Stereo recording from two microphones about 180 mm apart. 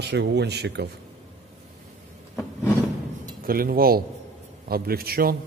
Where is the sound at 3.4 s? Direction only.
55° right (ahead or behind).